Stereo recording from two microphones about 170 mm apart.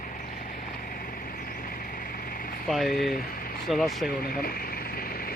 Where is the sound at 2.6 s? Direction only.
Centre (ahead or behind).